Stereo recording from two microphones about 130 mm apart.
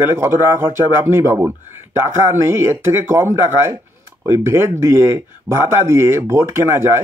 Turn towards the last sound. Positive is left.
turn(degrees=-20)  # may be behind; listen again after turning